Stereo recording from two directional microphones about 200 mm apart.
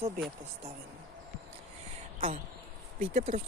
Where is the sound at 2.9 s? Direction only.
35° right (ahead or behind).